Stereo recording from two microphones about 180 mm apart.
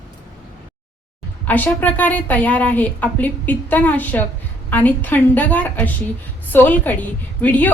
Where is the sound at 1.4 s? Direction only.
10° left (ahead or behind).